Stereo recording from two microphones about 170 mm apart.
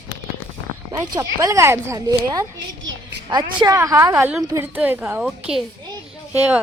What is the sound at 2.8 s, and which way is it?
Speech, 90° right.